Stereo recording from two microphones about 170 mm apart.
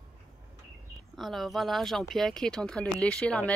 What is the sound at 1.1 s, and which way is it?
Speech, centre (ahead or behind).